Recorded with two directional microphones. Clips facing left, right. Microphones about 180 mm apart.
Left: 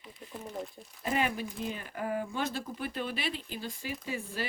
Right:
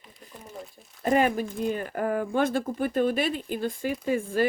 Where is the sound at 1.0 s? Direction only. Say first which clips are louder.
Right 8 dB; 45° right (ahead or behind).